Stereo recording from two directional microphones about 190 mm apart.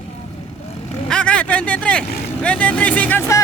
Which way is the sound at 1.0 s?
5° left (ahead or behind).